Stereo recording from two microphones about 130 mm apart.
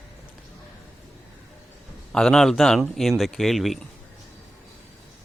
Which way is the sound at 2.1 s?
5° left (ahead or behind).